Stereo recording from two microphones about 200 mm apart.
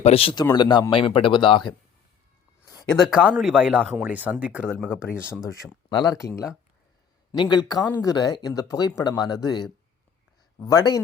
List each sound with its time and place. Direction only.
0.0 s speech: 30° left (ahead or behind)
3.1 s speech: 5° right (ahead or behind)
5.9 s speech: 20° left (ahead or behind)
7.5 s speech: 20° left (ahead or behind)